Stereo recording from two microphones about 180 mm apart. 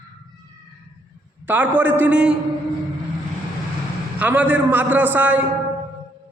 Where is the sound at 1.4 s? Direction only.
10° right (ahead or behind).